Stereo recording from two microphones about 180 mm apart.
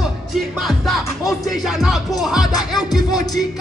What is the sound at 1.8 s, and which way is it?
Music, centre (ahead or behind).